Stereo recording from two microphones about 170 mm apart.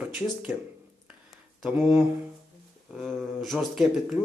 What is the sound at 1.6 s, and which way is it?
Speech, 5° right (ahead or behind).